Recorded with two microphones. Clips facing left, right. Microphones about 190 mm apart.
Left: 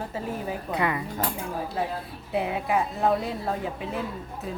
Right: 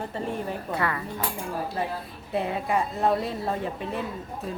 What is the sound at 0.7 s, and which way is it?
Speech, 15° left (ahead or behind).